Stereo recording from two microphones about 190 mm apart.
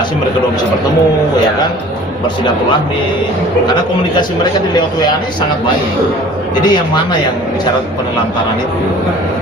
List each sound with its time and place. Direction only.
6.7 s speech: 25° left (ahead or behind)